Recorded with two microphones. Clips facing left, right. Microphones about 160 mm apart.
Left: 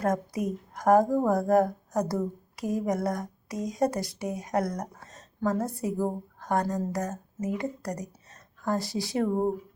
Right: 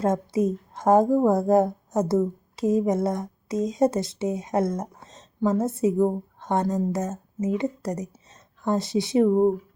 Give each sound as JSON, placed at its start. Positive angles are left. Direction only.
{"t": 0.0, "sound": "speech", "side_deg": -25}